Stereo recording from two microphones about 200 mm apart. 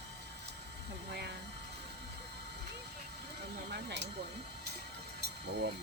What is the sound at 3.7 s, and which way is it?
Speech, 55° right (ahead or behind).